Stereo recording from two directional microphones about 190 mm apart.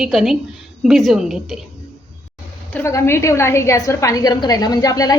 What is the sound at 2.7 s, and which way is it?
A woman's voice, 15° left (ahead or behind).